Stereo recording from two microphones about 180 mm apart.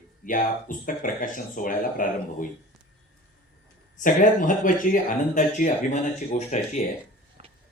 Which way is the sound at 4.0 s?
45° left (ahead or behind).